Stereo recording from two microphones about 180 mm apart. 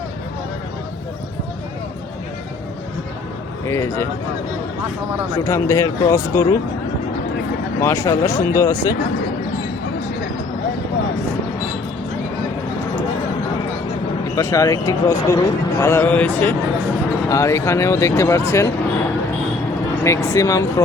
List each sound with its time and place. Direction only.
3.7 s speech: 15° left (ahead or behind)
5.4 s speech: 15° left (ahead or behind)
7.8 s speech: 15° left (ahead or behind)
14.3 s speech: 20° left (ahead or behind)
20.1 s speech: 15° left (ahead or behind)